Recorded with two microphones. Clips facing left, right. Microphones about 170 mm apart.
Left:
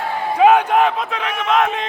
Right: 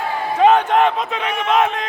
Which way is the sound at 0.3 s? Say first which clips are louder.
Left 1 dB; 10° left (ahead or behind).